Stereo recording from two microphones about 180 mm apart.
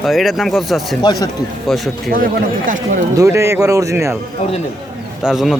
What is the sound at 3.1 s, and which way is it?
A man's voice, 15° right (ahead or behind).